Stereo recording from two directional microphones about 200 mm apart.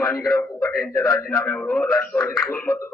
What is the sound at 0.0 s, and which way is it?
A man's voice, 5° left (ahead or behind).